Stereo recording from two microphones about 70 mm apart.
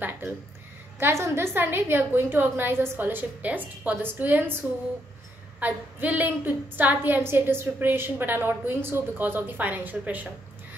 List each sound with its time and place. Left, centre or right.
0.9 s a woman's voice: right
5.6 s a woman's voice: right